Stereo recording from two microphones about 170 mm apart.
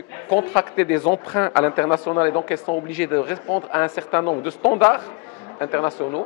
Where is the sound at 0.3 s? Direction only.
15° left (ahead or behind).